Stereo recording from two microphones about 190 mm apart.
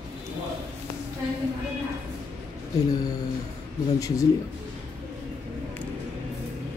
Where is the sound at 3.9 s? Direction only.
20° left (ahead or behind).